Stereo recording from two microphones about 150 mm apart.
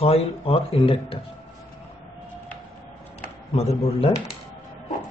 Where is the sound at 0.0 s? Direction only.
40° left (ahead or behind).